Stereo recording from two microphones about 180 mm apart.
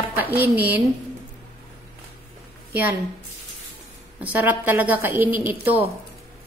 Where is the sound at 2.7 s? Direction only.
10° right (ahead or behind).